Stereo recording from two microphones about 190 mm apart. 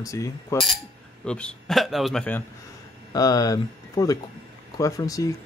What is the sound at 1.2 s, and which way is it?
A man's voice, 5° left (ahead or behind).